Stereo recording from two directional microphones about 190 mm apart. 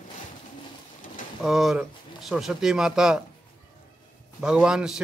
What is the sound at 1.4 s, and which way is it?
Speech, centre (ahead or behind).